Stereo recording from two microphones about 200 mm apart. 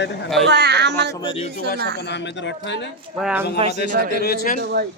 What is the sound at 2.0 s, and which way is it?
Speech, 60° left (ahead or behind).